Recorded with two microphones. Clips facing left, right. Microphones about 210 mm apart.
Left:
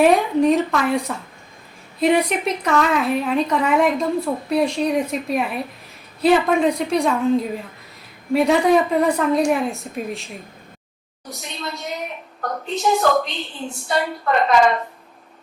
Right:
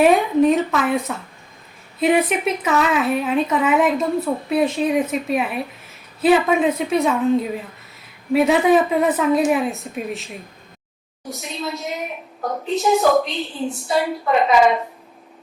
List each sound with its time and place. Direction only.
0.0 s a woman's voice: centre (ahead or behind)
11.3 s a woman's voice: centre (ahead or behind)